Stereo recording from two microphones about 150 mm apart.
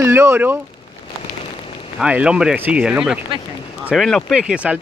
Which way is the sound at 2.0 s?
5° right (ahead or behind).